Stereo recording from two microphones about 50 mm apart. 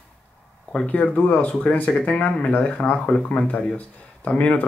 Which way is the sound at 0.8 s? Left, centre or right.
Left.